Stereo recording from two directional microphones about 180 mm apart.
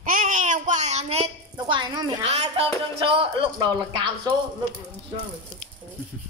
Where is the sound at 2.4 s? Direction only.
30° right (ahead or behind).